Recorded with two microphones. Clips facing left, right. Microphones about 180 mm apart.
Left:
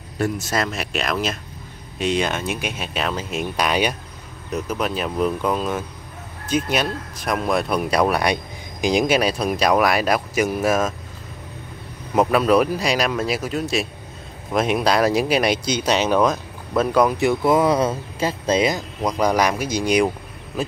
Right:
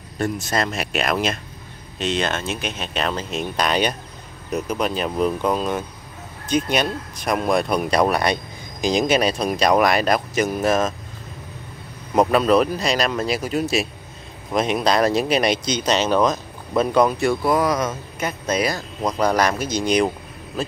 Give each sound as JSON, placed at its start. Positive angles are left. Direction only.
{"t": 0.2, "sound": "speech", "side_deg": 5}
{"t": 2.0, "sound": "speech", "side_deg": 10}
{"t": 12.2, "sound": "speech", "side_deg": 5}
{"t": 17.2, "sound": "speech", "side_deg": 20}